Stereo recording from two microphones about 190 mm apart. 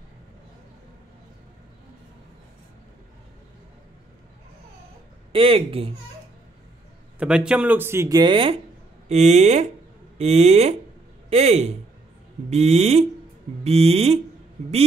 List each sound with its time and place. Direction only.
5.3 s speech: 30° right (ahead or behind)
7.2 s speech: 5° right (ahead or behind); by 14.2 s 30° right (ahead or behind)